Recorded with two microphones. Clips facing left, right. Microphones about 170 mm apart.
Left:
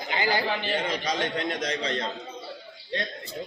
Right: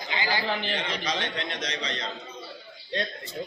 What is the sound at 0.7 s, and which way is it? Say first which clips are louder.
A man's voice: left 3 dB; 45° left (ahead or behind).